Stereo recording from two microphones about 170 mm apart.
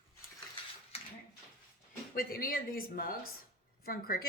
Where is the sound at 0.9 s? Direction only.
35° left (ahead or behind).